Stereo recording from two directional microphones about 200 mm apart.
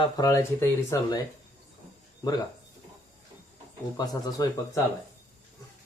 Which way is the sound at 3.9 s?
20° left (ahead or behind).